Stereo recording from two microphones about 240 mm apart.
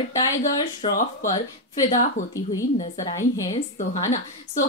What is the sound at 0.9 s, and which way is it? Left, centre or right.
Speech, left.